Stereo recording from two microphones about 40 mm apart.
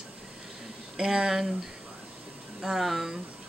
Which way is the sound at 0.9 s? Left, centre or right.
Centre.